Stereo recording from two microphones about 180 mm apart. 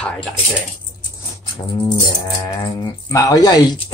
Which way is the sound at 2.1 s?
20° left (ahead or behind).